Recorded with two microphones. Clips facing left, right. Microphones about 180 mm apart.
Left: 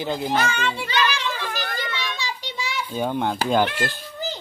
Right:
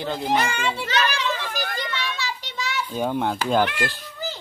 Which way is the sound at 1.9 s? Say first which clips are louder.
Right 1 dB; 15° left (ahead or behind).